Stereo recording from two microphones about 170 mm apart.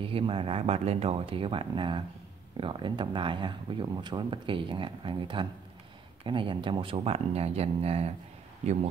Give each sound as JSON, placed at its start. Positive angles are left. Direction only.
{"t": 0.0, "sound": "speech", "side_deg": -30}